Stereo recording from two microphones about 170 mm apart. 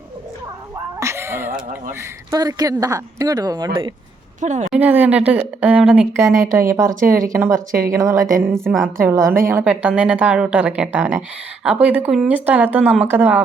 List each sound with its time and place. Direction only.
0.9 s speech: 15° right (ahead or behind)
4.4 s a woman's voice: 45° right (ahead or behind)
4.7 s speech: 10° right (ahead or behind)
8.6 s a woman's voice: centre (ahead or behind)
9.0 s speech: 15° right (ahead or behind)